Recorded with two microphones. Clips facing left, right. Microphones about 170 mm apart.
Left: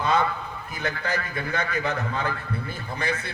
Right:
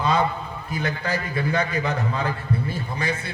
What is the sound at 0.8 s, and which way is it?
A man's voice, 30° right (ahead or behind).